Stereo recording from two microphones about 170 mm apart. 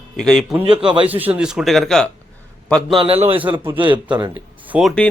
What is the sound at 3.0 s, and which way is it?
A man's voice, 35° right (ahead or behind).